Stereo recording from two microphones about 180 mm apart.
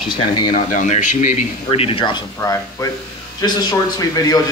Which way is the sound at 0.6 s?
40° left (ahead or behind).